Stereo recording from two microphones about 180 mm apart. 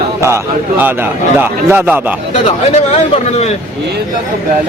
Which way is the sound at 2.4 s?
40° left (ahead or behind).